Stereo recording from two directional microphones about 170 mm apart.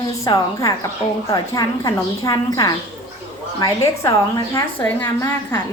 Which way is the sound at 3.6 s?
20° left (ahead or behind).